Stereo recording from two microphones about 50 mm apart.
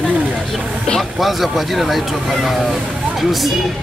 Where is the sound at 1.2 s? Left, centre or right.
Centre.